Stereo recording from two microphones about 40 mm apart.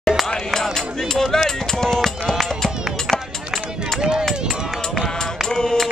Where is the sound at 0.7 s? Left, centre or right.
Centre.